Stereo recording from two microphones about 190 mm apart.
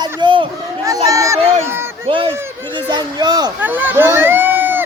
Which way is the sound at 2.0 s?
30° right (ahead or behind).